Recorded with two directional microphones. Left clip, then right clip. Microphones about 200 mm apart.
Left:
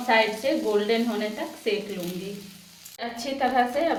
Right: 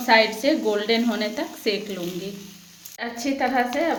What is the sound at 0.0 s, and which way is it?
A woman's voice, 45° right (ahead or behind).